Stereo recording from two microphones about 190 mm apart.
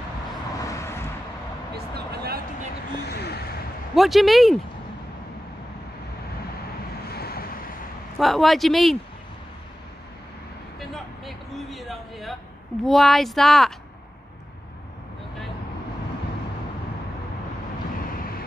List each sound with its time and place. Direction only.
0.7 s vehicle: 15° left (ahead or behind)
2.0 s music: 55° right (ahead or behind)
3.1 s a sound: 60° left (ahead or behind)
3.9 s speech: centre (ahead or behind)
7.1 s waves: 55° left (ahead or behind)
8.2 s speech: centre (ahead or behind)
10.8 s vehicle: centre (ahead or behind)
12.8 s speech: centre (ahead or behind)